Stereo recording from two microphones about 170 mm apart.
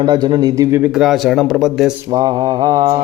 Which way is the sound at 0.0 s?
25° right (ahead or behind).